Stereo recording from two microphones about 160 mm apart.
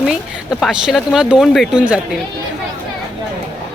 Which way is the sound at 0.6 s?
Centre (ahead or behind).